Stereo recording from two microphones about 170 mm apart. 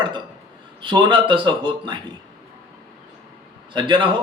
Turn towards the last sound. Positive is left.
turn(degrees=-30)  # may be behind; listen again after turning